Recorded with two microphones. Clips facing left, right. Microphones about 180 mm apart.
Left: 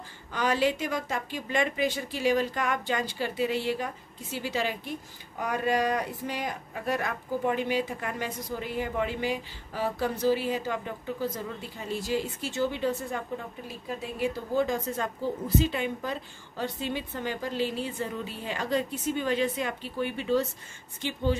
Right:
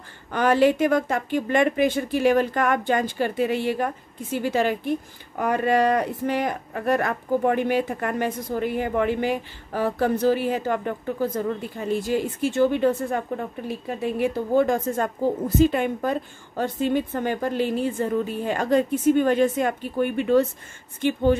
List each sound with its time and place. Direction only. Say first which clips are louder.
0.3 s a woman's voice: right 8 dB; 55° right (ahead or behind)